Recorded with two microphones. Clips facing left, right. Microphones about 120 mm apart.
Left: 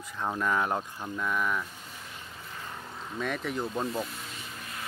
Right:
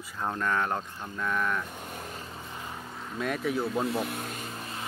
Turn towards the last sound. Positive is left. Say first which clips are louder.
# right 4 dB
turn(degrees=-35)  # may be behind; listen again after turning